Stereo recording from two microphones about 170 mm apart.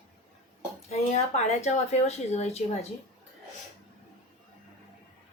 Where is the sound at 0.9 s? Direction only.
40° left (ahead or behind).